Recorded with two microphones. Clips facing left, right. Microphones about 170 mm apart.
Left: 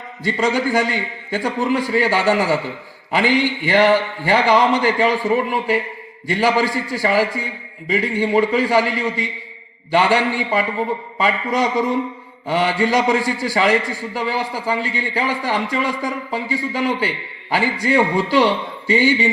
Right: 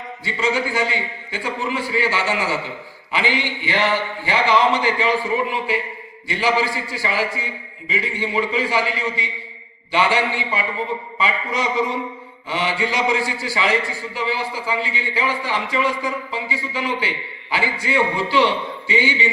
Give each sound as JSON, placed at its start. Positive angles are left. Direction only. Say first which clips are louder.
{"t": 0.3, "sound": "a man's voice", "louder": "left 4 dB", "side_deg": 40}